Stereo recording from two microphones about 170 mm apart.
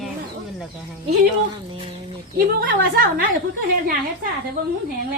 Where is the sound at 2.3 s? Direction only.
60° right (ahead or behind).